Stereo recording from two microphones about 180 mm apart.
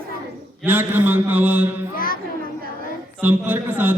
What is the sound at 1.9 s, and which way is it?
Music, 50° left (ahead or behind).